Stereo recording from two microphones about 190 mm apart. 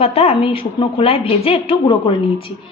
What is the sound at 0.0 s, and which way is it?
A woman's voice, 30° left (ahead or behind).